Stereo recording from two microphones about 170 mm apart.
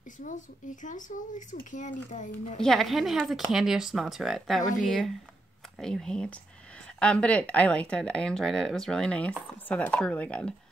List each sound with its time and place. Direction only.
0.8 s speech: 50° left (ahead or behind)
2.6 s speech: centre (ahead or behind)